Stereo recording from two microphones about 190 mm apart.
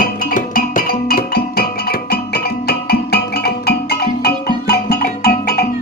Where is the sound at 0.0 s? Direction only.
45° left (ahead or behind).